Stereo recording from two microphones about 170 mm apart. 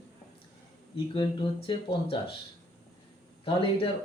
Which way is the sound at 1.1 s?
30° left (ahead or behind).